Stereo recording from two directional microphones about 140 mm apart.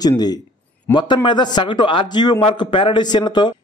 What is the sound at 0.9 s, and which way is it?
Speech, 35° left (ahead or behind).